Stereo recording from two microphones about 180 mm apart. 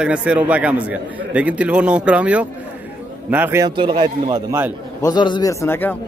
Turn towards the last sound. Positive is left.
turn(degrees=10)  # may be behind; listen again after turning